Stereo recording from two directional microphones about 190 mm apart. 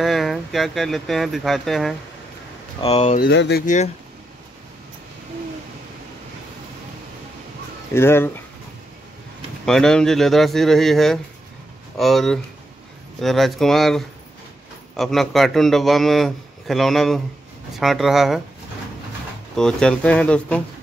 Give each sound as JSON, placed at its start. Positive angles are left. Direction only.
{"t": 0.0, "sound": "a man's voice", "side_deg": 0}
{"t": 2.8, "sound": "speech", "side_deg": 30}
{"t": 3.2, "sound": "speech", "side_deg": 60}
{"t": 3.6, "sound": "speech", "side_deg": 40}
{"t": 7.9, "sound": "speech", "side_deg": 15}
{"t": 9.7, "sound": "a man's voice", "side_deg": 5}
{"t": 19.5, "sound": "a man's voice", "side_deg": 5}